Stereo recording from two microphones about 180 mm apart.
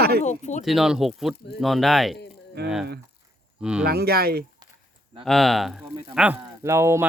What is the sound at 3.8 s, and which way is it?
Speech, 60° right (ahead or behind).